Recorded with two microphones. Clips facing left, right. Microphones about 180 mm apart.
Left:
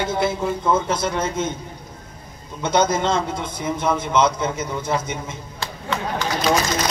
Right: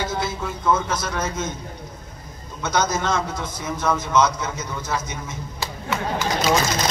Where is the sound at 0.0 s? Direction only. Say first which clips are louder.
Left 5 dB; 25° left (ahead or behind).